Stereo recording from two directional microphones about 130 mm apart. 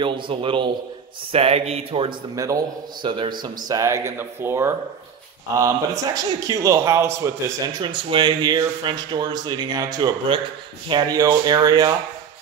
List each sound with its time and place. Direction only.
0.0 s speech: 40° right (ahead or behind)
2.3 s a man's voice: 25° right (ahead or behind)
7.8 s speech: 40° right (ahead or behind)